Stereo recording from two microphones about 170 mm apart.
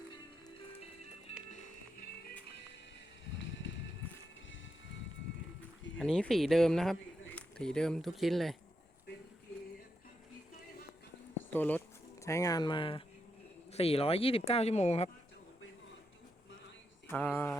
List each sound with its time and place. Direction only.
1.3 s music: 40° left (ahead or behind)
6.0 s speech: 5° left (ahead or behind)
11.5 s speech: 10° left (ahead or behind); by 15.1 s 40° left (ahead or behind)
17.1 s mantra: 10° left (ahead or behind)